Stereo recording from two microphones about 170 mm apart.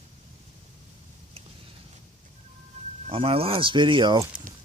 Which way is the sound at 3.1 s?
35° right (ahead or behind).